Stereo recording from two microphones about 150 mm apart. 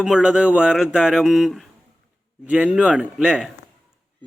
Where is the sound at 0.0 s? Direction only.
5° right (ahead or behind).